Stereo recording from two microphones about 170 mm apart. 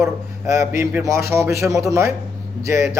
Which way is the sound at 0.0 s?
15° right (ahead or behind).